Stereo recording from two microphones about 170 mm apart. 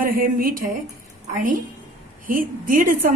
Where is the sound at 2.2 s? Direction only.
55° right (ahead or behind).